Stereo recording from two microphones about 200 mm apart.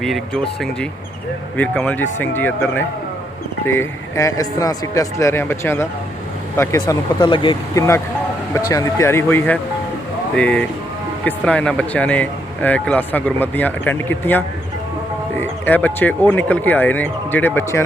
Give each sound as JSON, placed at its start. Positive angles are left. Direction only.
{"t": 0.0, "sound": "speech", "side_deg": 0}